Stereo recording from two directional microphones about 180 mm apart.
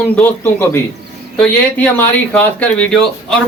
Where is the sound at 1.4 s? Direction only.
10° left (ahead or behind).